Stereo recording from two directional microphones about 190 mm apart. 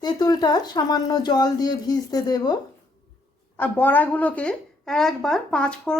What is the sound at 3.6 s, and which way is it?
A woman's voice, 10° left (ahead or behind).